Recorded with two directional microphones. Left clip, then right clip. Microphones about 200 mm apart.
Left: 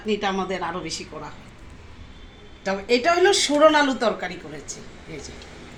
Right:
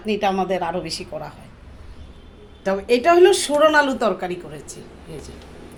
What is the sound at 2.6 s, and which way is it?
A woman's voice, 40° right (ahead or behind).